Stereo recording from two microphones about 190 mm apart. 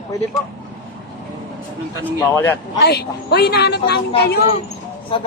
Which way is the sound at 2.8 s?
60° left (ahead or behind).